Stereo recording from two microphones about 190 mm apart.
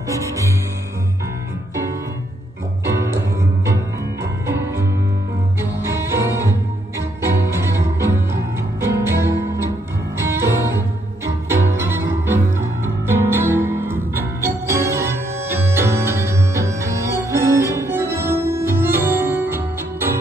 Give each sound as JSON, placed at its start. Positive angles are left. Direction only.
{"t": 0.1, "sound": "music", "side_deg": -15}
{"t": 2.8, "sound": "music", "side_deg": -15}
{"t": 5.6, "sound": "bowed string instrument", "side_deg": -15}
{"t": 7.2, "sound": "music", "side_deg": -15}